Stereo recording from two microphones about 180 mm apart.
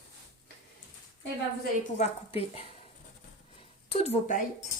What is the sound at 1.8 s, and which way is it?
Speech, 40° left (ahead or behind).